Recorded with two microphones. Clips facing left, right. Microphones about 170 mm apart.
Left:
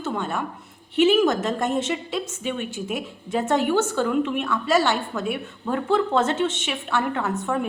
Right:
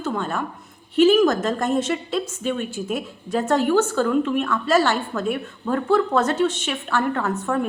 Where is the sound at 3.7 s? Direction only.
20° left (ahead or behind).